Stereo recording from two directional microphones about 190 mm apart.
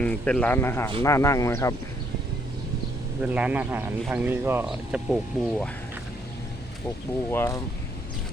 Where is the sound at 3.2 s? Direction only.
5° right (ahead or behind).